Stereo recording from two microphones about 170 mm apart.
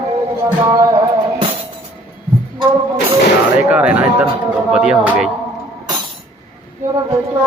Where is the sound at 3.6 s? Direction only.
5° right (ahead or behind).